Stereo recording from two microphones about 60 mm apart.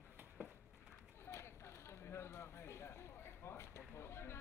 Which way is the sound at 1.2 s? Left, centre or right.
Left.